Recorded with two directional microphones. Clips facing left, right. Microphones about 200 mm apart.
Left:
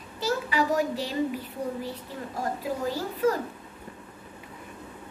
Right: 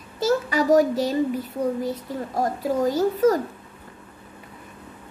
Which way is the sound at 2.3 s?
40° right (ahead or behind).